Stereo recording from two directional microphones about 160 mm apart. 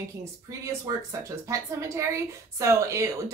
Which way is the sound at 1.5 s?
20° right (ahead or behind).